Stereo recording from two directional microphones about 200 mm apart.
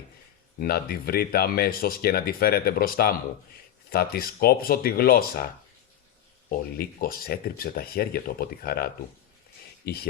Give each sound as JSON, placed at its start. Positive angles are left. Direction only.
{"t": 0.6, "sound": "speech", "side_deg": 50}
{"t": 6.5, "sound": "speech", "side_deg": 45}